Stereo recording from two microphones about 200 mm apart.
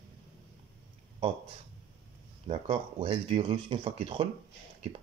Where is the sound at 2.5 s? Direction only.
25° right (ahead or behind).